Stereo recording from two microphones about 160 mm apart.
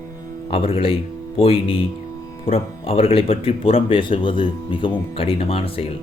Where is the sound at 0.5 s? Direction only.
35° left (ahead or behind).